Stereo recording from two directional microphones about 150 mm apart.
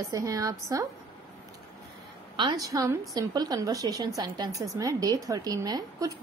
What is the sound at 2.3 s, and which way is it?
A woman's voice, 30° right (ahead or behind).